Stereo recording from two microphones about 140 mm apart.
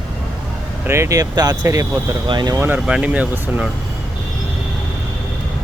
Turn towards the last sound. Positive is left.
turn(degrees=-10)  # may be behind; listen again after turning